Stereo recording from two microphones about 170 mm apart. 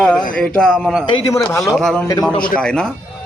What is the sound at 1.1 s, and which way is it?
Speech, 25° left (ahead or behind).